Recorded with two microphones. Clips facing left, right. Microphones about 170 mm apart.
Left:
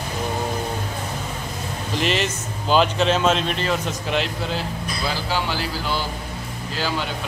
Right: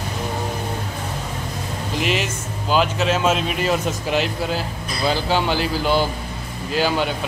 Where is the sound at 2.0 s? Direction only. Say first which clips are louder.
Even; 5° right (ahead or behind).